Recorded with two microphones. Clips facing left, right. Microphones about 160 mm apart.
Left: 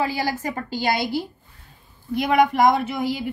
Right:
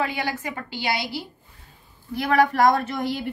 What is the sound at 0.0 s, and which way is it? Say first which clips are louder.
A woman's voice: left 3 dB; 35° left (ahead or behind).